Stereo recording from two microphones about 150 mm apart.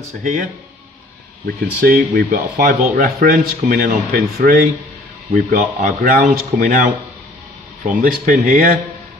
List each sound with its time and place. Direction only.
0.2 s speech: 60° right (ahead or behind)
1.8 s speech: 75° right (ahead or behind)
5.3 s speech: 60° right (ahead or behind)